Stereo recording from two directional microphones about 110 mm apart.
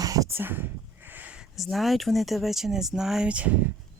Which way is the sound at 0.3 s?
20° right (ahead or behind).